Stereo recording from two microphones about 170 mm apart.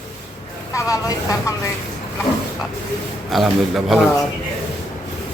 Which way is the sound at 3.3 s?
Centre (ahead or behind).